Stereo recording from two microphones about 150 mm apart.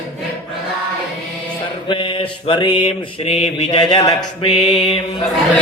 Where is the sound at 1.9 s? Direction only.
35° left (ahead or behind).